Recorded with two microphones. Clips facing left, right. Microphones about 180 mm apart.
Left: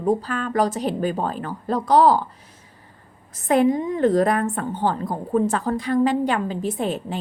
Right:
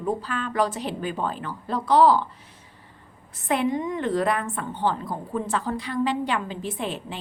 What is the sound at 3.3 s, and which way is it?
A woman's voice, 40° left (ahead or behind).